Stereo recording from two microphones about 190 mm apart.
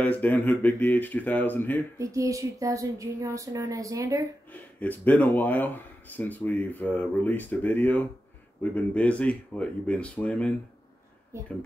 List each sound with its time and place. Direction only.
0.0 s speech: 10° left (ahead or behind)
2.0 s speech: 15° right (ahead or behind)
4.5 s speech: 10° left (ahead or behind)
11.3 s speech: 15° right (ahead or behind)